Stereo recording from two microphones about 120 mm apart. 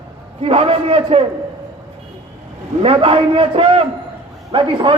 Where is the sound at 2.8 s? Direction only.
50° right (ahead or behind).